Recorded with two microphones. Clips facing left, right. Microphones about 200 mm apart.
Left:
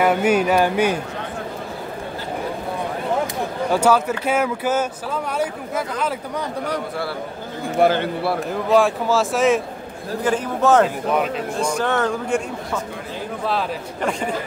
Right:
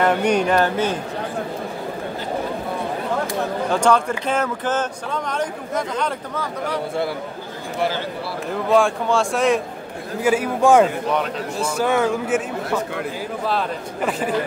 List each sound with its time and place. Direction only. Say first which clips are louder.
0.0 s a man's voice: left 1 dB; 5° left (ahead or behind)
3.7 s a man's voice: left 1 dB; 5° left (ahead or behind)
7.8 s a man's voice: left 6 dB; 55° left (ahead or behind)
8.5 s speech: right 1 dB; centre (ahead or behind)
10.2 s speech: right 2 dB; 10° right (ahead or behind)
13.5 s speech: even; centre (ahead or behind)